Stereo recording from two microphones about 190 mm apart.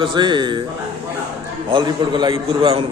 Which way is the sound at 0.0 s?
25° right (ahead or behind).